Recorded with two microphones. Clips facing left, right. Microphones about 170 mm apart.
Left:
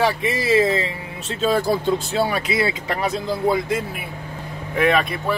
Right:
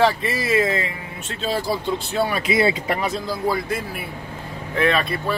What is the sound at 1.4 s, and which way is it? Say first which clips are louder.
Speech: left 4 dB; 50° left (ahead or behind).